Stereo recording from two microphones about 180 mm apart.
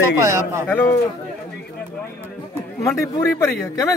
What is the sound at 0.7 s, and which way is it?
Speech, 10° left (ahead or behind).